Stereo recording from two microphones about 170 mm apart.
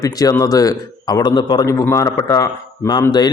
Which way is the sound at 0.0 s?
20° left (ahead or behind).